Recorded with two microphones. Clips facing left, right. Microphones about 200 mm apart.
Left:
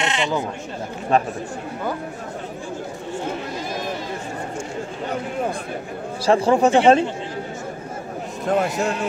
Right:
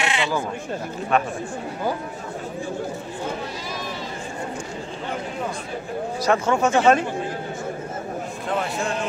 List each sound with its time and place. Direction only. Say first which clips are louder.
0.0 s speech: left 1 dB; 20° left (ahead or behind)
1.1 s speech: left 2 dB; 35° left (ahead or behind)
6.2 s speech: left 4 dB; 30° left (ahead or behind)
8.5 s speech: left 6 dB; 40° left (ahead or behind)